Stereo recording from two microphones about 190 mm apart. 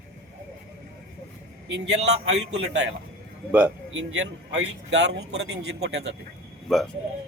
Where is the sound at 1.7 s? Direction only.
70° right (ahead or behind).